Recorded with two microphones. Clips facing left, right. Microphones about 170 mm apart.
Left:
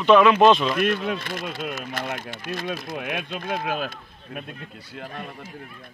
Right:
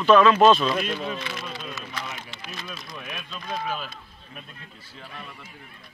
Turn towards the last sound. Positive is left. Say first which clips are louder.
# left 7 dB
turn(degrees=50)  # may be behind; listen again after turning